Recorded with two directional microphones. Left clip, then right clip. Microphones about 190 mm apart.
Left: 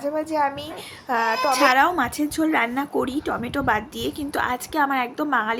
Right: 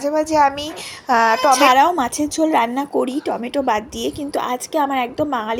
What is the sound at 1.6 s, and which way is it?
Speech, 10° right (ahead or behind).